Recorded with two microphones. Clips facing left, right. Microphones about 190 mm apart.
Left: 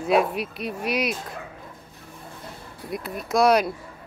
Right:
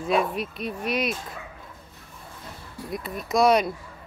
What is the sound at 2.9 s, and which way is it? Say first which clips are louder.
Speech: left 1 dB; centre (ahead or behind).